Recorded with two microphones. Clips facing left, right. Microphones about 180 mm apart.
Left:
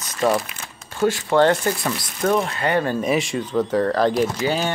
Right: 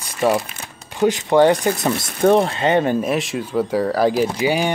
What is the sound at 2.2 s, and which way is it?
Speech, 30° right (ahead or behind).